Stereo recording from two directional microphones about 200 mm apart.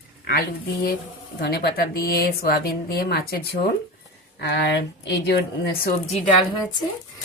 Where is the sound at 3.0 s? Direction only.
50° left (ahead or behind).